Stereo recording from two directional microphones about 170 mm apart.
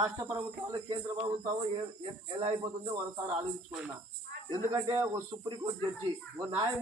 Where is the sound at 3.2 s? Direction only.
35° right (ahead or behind).